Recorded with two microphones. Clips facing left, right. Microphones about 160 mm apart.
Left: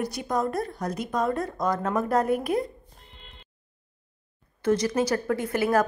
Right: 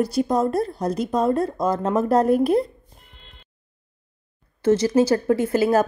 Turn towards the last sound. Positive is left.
turn(degrees=-30)  # may be behind; listen again after turning